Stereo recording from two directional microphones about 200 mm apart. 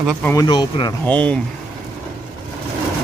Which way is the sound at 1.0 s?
5° left (ahead or behind).